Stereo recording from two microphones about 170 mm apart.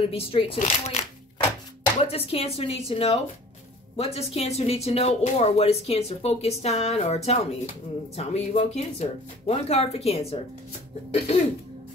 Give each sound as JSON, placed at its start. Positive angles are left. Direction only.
{"t": 0.0, "sound": "speech", "side_deg": 35}